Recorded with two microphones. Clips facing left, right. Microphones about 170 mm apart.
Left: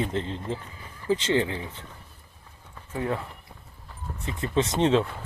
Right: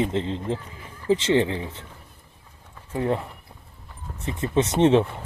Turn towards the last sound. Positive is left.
turn(degrees=-25)  # may be behind; listen again after turning